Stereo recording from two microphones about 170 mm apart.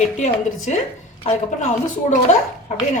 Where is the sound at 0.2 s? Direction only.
45° left (ahead or behind).